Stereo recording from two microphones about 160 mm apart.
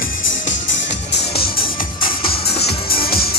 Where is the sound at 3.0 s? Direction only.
70° left (ahead or behind).